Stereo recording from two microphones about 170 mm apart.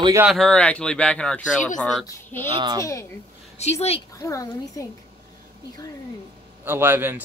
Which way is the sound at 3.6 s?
40° left (ahead or behind).